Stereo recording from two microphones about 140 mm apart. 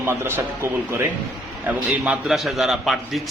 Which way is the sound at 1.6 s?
5° right (ahead or behind).